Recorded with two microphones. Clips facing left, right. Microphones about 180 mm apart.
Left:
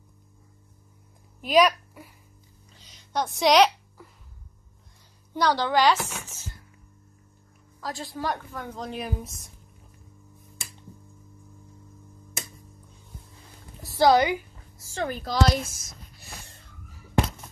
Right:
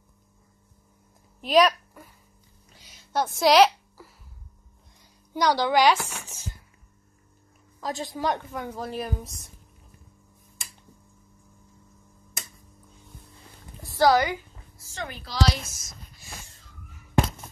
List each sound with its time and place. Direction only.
1.4 s a woman's voice: centre (ahead or behind)
2.7 s a sound: 10° right (ahead or behind)
5.3 s speech: 15° right (ahead or behind)
7.8 s a woman's voice: 20° right (ahead or behind)
8.7 s a woman's voice: 5° right (ahead or behind)
13.9 s a sound: 20° left (ahead or behind)
15.0 s speech: 45° left (ahead or behind)